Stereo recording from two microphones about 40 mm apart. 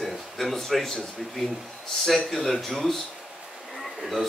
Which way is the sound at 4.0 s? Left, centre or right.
Centre.